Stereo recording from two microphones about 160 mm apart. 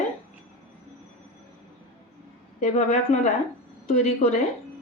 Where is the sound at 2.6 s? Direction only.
45° left (ahead or behind).